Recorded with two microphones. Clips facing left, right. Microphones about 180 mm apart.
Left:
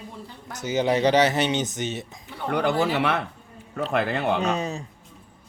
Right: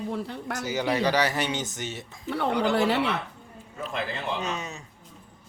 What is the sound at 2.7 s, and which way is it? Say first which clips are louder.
Speech: even; 65° right (ahead or behind).